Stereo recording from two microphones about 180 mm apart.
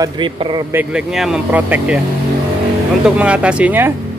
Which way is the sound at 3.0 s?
5° right (ahead or behind).